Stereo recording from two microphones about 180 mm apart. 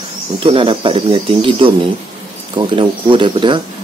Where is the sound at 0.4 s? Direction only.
30° right (ahead or behind).